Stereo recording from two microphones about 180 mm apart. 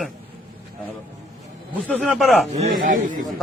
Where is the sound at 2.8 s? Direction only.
50° right (ahead or behind).